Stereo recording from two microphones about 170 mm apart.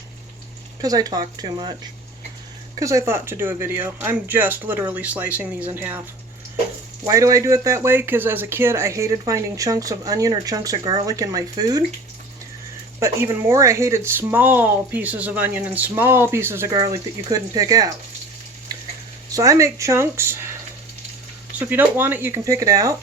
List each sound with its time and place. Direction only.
0.8 s speech: 20° right (ahead or behind)
2.7 s speech: 20° right (ahead or behind)
7.0 s speech: 20° right (ahead or behind)
13.0 s speech: 15° right (ahead or behind)
18.7 s a sound: 20° right (ahead or behind)
19.3 s speech: 20° right (ahead or behind)
21.6 s speech: 10° right (ahead or behind)